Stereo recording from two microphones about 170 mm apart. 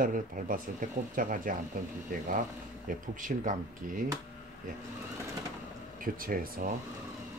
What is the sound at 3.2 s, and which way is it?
Speech, 50° right (ahead or behind).